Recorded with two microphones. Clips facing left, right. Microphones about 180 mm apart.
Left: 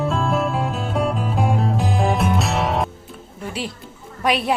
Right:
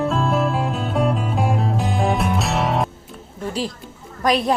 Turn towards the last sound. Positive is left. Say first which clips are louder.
# right 2 dB
turn(degrees=5)  # may be behind; listen again after turning